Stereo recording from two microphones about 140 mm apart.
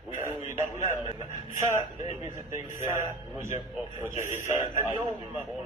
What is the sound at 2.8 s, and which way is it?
A man's voice, 20° right (ahead or behind).